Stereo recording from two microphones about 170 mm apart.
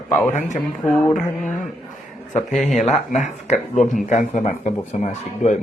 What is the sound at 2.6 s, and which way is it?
Speech, 45° left (ahead or behind).